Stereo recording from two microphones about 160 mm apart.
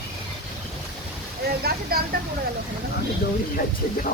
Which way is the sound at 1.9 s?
70° right (ahead or behind).